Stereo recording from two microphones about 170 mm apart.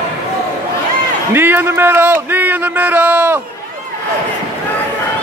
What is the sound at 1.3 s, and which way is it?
Speech, 10° right (ahead or behind).